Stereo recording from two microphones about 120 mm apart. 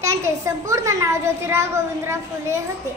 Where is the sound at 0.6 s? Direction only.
25° right (ahead or behind).